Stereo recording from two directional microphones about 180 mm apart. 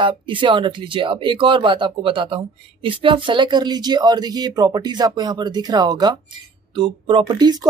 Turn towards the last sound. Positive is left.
turn(degrees=-20)  # may be behind; listen again after turning